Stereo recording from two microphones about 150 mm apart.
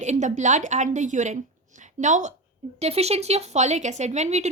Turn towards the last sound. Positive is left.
turn(degrees=-50)  # may be behind; listen again after turning